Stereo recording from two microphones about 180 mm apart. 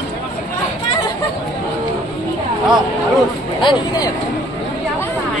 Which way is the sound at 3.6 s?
25° left (ahead or behind).